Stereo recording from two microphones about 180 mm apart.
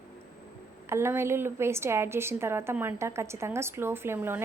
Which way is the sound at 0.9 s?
15° right (ahead or behind).